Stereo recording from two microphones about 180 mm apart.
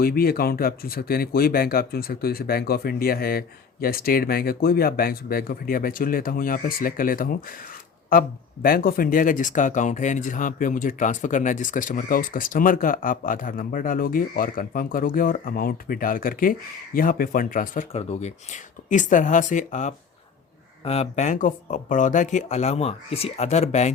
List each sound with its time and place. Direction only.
0.0 s speech: 55° left (ahead or behind); by 23.9 s 40° left (ahead or behind)